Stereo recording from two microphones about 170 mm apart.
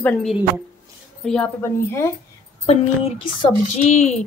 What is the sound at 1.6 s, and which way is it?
Speech, 15° left (ahead or behind).